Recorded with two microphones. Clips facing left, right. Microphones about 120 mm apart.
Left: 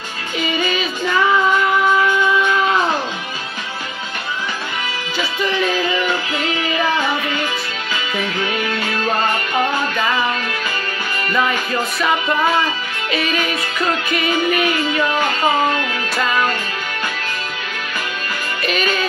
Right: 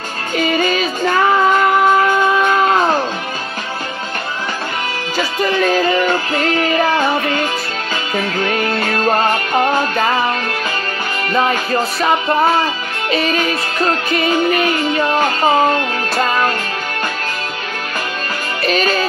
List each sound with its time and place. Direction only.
0.4 s music: 45° right (ahead or behind)
5.1 s music: 40° right (ahead or behind)
11.3 s music: 35° right (ahead or behind)
18.7 s music: 35° right (ahead or behind)